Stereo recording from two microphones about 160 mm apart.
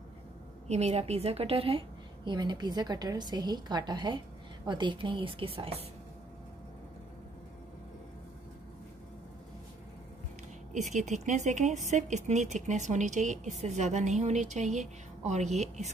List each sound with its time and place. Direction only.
0.7 s a woman's voice: 45° right (ahead or behind)
10.7 s speech: 50° right (ahead or behind)